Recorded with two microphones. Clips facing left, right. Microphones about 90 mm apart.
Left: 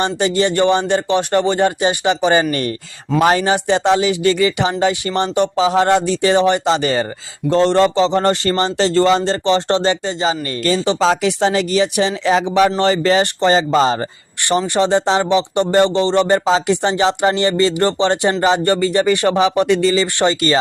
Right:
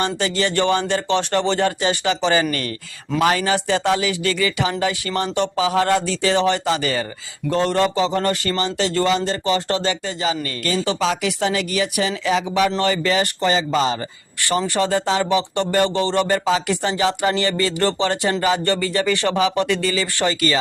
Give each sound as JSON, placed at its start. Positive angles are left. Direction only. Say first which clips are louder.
{"t": 0.0, "sound": "speech", "louder": "left 5 dB", "side_deg": 20}
{"t": 2.4, "sound": "speech", "louder": "left 4 dB", "side_deg": 30}
{"t": 14.8, "sound": "speech", "louder": "left 5 dB", "side_deg": 25}